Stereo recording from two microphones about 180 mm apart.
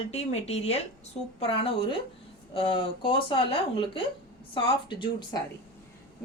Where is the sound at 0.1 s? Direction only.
35° left (ahead or behind).